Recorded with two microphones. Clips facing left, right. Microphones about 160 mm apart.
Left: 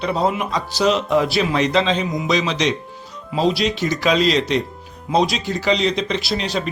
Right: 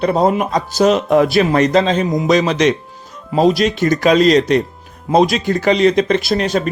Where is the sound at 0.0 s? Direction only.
50° right (ahead or behind).